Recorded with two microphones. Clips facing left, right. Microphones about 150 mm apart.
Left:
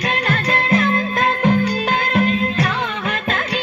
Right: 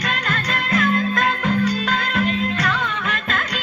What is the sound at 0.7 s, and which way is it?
Music, 25° left (ahead or behind).